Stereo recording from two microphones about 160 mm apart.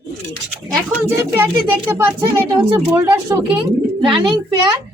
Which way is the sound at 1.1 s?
15° right (ahead or behind).